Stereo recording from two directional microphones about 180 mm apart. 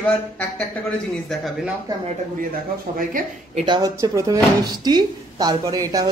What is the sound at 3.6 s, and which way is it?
Speech, 25° right (ahead or behind).